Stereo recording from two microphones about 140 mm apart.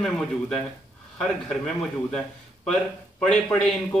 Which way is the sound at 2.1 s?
5° left (ahead or behind).